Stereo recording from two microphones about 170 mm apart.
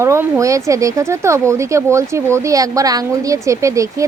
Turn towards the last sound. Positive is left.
turn(degrees=-20)  # may be behind; listen again after turning